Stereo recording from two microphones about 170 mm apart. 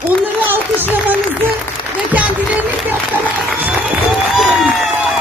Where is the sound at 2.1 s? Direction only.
10° right (ahead or behind).